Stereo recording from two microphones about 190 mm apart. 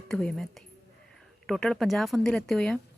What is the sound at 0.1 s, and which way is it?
Speech, 5° left (ahead or behind).